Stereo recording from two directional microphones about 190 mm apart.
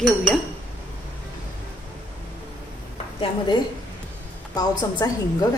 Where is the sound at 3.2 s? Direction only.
25° left (ahead or behind).